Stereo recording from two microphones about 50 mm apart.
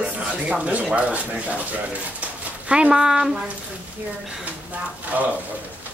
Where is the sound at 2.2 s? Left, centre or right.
Right.